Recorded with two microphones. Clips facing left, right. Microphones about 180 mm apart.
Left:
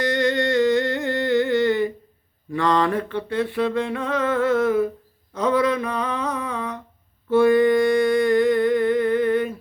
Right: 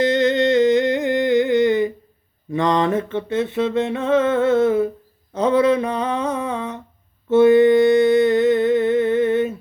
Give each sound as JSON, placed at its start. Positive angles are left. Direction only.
{"t": 0.0, "sound": "music", "side_deg": -20}
{"t": 2.5, "sound": "a sound", "side_deg": -20}
{"t": 7.3, "sound": "humming", "side_deg": -25}